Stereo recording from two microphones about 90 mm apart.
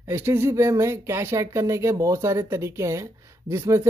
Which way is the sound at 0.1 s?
25° right (ahead or behind).